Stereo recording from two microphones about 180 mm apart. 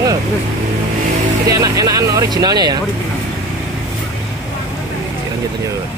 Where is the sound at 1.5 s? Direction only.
20° right (ahead or behind).